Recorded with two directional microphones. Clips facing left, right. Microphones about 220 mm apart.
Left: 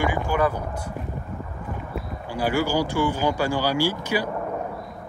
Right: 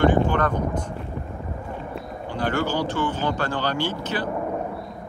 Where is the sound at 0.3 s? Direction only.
10° left (ahead or behind).